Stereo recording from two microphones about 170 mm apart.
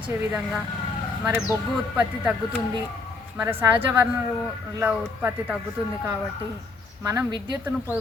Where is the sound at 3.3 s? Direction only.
15° right (ahead or behind).